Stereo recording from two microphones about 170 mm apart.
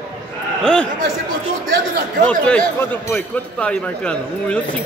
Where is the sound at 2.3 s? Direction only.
5° left (ahead or behind).